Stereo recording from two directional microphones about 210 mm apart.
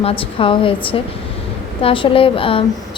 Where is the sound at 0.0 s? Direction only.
25° left (ahead or behind).